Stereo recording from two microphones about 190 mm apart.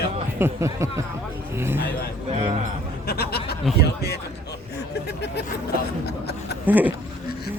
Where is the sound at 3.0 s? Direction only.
55° left (ahead or behind).